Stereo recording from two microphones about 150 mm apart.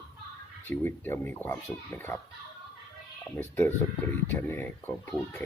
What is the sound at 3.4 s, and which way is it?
Speech, 15° left (ahead or behind).